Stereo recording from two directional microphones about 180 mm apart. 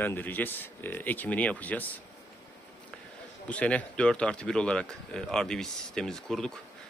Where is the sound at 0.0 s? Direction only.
10° left (ahead or behind).